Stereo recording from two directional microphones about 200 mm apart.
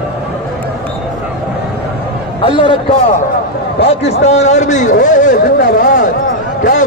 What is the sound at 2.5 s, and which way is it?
Speech, 25° left (ahead or behind).